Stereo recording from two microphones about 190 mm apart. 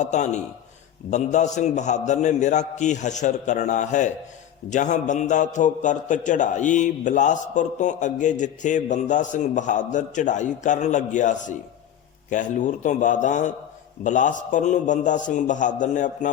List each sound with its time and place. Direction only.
0.0 s a man's voice: 40° left (ahead or behind)